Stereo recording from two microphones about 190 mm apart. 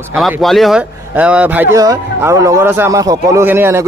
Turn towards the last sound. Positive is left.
turn(degrees=-10)  # may be behind; listen again after turning